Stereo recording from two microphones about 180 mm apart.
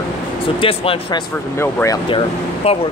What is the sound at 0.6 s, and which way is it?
Speech, 30° left (ahead or behind).